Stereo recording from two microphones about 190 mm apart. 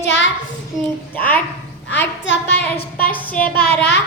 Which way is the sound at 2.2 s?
65° left (ahead or behind).